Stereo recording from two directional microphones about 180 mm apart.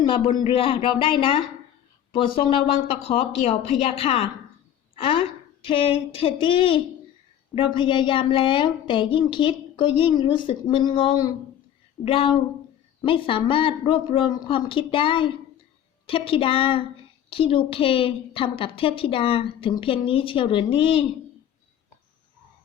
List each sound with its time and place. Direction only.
0.1 s a woman's voice: 25° left (ahead or behind)